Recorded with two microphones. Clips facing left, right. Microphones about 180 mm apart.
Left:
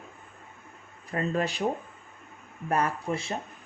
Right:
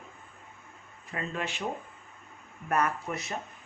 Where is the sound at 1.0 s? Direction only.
40° left (ahead or behind).